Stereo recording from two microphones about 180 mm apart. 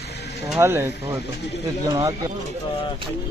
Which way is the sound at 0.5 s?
15° right (ahead or behind).